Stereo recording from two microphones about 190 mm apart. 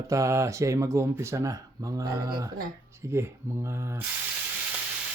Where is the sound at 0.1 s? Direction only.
15° right (ahead or behind).